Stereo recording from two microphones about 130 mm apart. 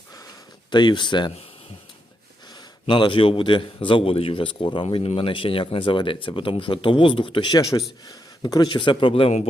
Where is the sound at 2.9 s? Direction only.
40° left (ahead or behind).